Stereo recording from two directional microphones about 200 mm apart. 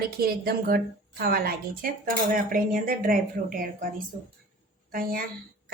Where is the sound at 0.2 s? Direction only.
50° right (ahead or behind).